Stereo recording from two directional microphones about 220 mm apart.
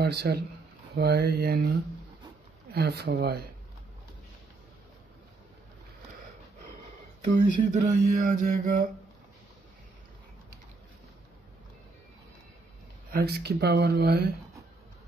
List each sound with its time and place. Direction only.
0.0 s a man's voice: 45° right (ahead or behind)
7.3 s a sound: 35° right (ahead or behind)
13.1 s speech: 45° right (ahead or behind)